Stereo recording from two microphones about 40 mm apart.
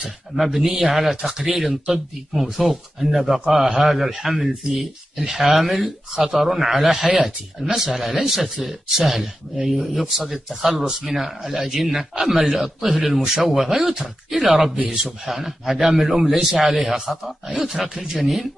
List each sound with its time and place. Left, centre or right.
0.4 s speech: centre
17.8 s speech: centre
18.2 s speech: centre